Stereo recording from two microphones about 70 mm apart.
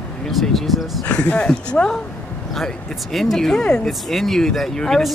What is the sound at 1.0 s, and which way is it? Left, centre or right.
Speech, centre.